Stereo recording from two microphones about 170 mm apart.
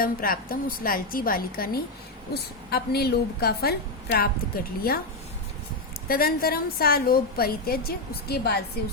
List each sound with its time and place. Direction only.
0.0 s a woman's voice: 60° left (ahead or behind)
6.1 s a woman's voice: 60° left (ahead or behind)